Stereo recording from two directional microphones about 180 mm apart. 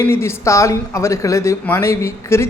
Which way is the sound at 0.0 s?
15° left (ahead or behind).